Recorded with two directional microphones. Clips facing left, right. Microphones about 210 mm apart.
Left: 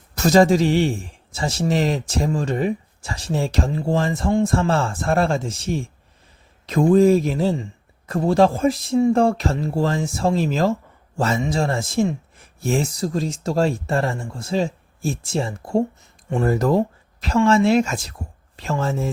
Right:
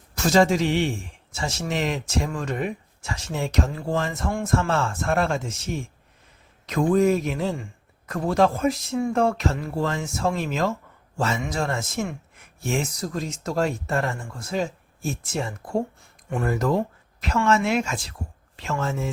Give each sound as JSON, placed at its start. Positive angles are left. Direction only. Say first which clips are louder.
{"t": 0.2, "sound": "a man's voice", "louder": "left 4 dB", "side_deg": 40}